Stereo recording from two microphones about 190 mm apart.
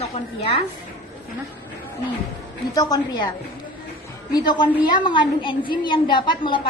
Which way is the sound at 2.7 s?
20° left (ahead or behind).